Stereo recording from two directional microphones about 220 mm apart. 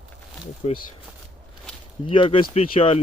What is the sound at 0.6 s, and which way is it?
Speech, 30° left (ahead or behind).